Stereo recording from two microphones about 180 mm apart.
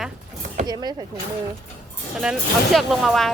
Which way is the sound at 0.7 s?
20° right (ahead or behind).